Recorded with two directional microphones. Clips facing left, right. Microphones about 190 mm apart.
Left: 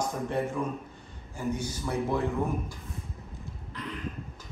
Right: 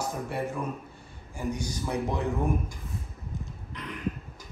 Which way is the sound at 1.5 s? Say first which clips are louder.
Even; 15° right (ahead or behind).